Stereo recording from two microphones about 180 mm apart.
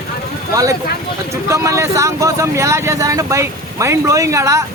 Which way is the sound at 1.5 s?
15° right (ahead or behind).